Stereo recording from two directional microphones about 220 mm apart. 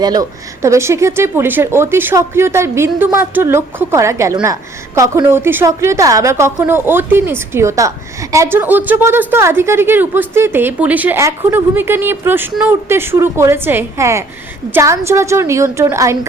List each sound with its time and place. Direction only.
0.0 s a woman's voice: 15° right (ahead or behind)